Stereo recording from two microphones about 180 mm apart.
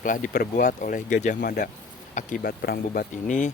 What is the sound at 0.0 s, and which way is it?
Speech, 50° left (ahead or behind).